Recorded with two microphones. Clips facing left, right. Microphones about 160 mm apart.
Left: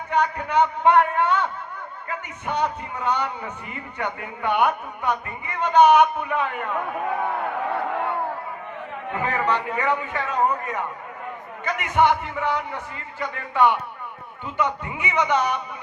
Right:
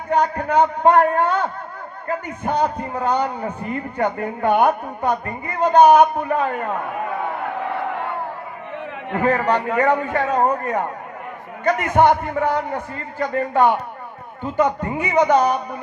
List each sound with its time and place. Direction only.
0.1 s a man's voice: 40° right (ahead or behind)
9.0 s a man's voice: 50° right (ahead or behind)
11.6 s a man's voice: 45° right (ahead or behind)